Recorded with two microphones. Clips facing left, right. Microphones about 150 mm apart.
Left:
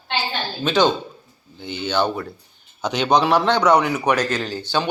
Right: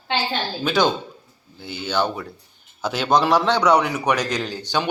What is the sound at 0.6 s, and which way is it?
A man's voice, 10° right (ahead or behind).